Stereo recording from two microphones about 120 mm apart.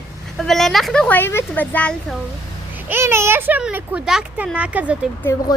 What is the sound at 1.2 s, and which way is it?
Speech, 20° left (ahead or behind).